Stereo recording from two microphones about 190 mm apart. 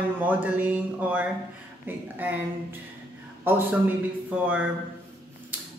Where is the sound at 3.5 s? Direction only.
10° right (ahead or behind).